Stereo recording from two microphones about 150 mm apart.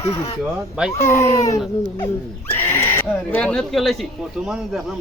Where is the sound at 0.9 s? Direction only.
20° left (ahead or behind).